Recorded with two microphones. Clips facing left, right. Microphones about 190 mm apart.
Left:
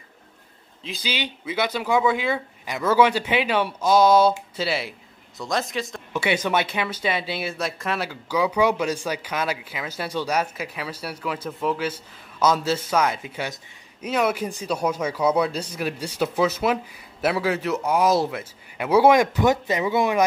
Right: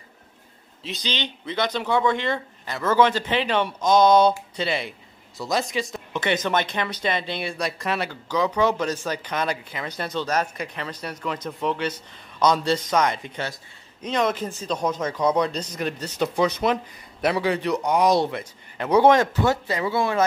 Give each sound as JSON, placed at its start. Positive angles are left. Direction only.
{"t": 0.8, "sound": "speech", "side_deg": 5}